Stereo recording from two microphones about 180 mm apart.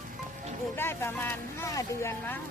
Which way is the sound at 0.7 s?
10° left (ahead or behind).